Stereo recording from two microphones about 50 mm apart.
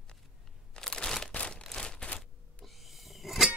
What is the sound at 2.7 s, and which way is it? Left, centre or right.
Music, centre.